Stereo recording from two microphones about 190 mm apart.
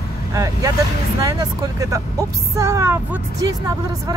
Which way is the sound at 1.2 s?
15° right (ahead or behind).